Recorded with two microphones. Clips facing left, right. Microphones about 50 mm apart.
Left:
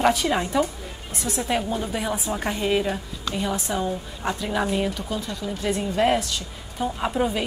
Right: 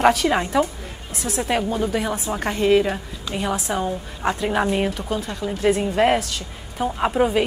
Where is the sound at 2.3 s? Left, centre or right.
Centre.